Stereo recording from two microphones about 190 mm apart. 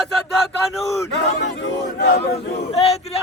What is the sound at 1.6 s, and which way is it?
Speech, 65° left (ahead or behind).